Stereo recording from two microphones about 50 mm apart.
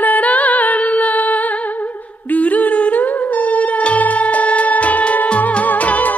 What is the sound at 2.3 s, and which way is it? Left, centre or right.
Humming, left.